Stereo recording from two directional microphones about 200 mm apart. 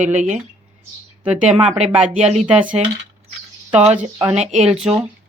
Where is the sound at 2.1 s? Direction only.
35° right (ahead or behind).